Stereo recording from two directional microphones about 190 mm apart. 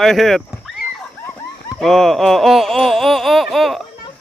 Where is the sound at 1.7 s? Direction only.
Centre (ahead or behind).